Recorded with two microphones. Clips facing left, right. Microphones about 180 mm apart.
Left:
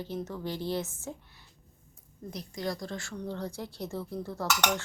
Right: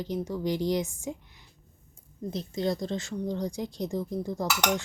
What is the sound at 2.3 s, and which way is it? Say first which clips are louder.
A woman's voice: right 6 dB; 25° right (ahead or behind).